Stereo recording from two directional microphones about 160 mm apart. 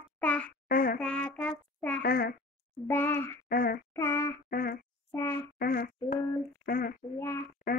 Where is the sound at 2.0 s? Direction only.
65° left (ahead or behind).